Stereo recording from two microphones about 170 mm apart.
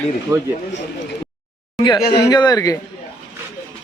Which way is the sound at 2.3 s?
25° left (ahead or behind).